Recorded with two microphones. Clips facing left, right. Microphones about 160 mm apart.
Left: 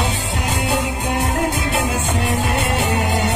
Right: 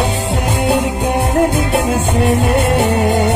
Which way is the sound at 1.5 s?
60° right (ahead or behind).